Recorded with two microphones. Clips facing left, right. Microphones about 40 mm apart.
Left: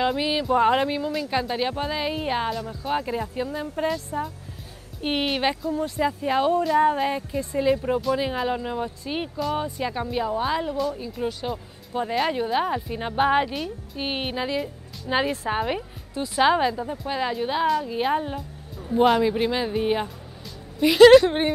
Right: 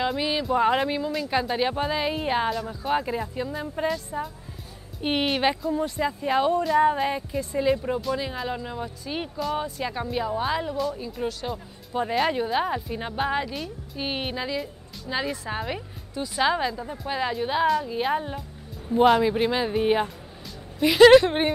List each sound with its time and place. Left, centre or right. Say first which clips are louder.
0.0 s a woman's voice: left 2 dB; centre
5.0 s a woman's voice: even; centre